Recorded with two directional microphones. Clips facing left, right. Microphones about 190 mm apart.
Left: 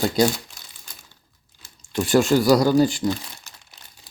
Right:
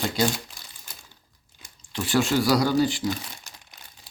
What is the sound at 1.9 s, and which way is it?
Speech, 45° left (ahead or behind).